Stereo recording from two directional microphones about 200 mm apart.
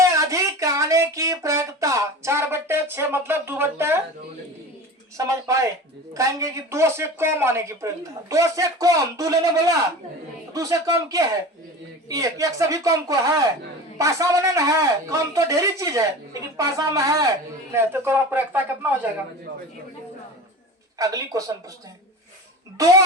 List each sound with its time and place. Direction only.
0.0 s a sound: 15° right (ahead or behind)
5.1 s speech: 15° right (ahead or behind)
21.0 s speech: 15° right (ahead or behind)